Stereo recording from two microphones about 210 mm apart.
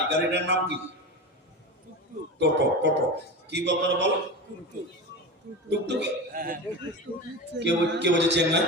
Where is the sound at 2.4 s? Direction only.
55° right (ahead or behind).